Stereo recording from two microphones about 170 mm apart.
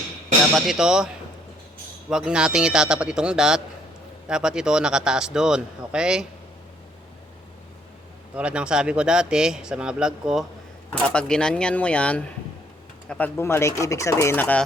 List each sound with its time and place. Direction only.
0.5 s a man's voice: 5° right (ahead or behind)
8.4 s a man's voice: 5° right (ahead or behind); by 14.6 s 10° left (ahead or behind)